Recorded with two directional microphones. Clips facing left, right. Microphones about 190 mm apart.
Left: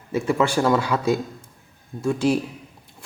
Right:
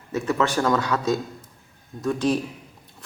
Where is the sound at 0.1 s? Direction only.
10° left (ahead or behind).